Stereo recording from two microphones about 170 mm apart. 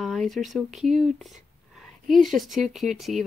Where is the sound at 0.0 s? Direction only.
Centre (ahead or behind).